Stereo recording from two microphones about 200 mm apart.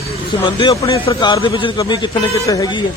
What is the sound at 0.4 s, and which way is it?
A man's voice, 20° left (ahead or behind).